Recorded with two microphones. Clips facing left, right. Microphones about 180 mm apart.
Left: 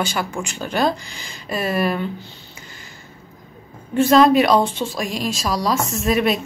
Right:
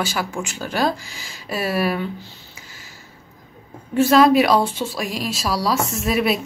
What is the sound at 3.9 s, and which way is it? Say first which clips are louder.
Speech: even; 5° right (ahead or behind).